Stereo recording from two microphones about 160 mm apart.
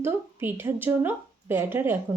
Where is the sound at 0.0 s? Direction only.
15° right (ahead or behind).